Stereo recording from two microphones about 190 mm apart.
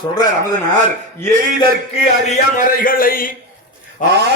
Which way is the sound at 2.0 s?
35° left (ahead or behind).